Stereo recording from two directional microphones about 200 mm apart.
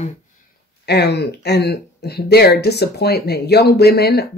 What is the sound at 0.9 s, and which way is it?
Speech, 55° left (ahead or behind).